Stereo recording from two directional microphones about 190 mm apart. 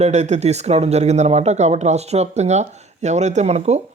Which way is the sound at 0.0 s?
40° right (ahead or behind).